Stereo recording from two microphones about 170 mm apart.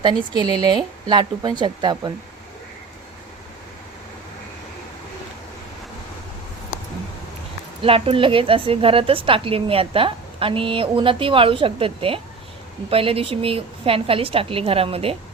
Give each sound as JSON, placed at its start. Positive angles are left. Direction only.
{"t": 0.0, "sound": "speech", "side_deg": -25}
{"t": 7.8, "sound": "a woman's voice", "side_deg": -35}